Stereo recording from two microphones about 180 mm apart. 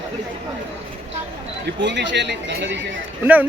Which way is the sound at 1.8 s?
80° right.